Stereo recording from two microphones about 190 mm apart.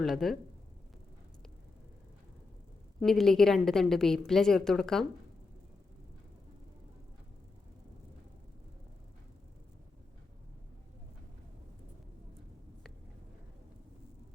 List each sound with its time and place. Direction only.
0.0 s a woman's voice: centre (ahead or behind)
3.0 s a woman's voice: centre (ahead or behind)